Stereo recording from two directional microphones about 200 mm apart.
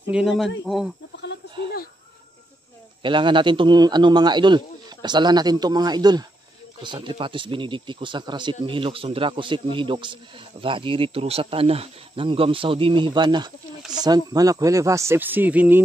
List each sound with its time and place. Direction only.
0.1 s speech: centre (ahead or behind)
1.1 s snake: 60° left (ahead or behind)
3.0 s speech: 25° right (ahead or behind); by 15.8 s 10° right (ahead or behind)